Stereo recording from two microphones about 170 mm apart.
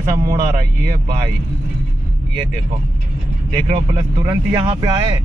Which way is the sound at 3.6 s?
20° right (ahead or behind).